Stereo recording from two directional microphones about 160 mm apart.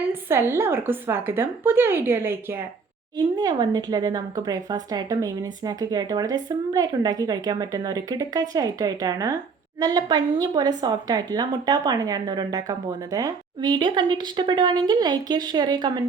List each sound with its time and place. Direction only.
0.1 s a woman's voice: 15° right (ahead or behind)
3.2 s speech: 25° right (ahead or behind)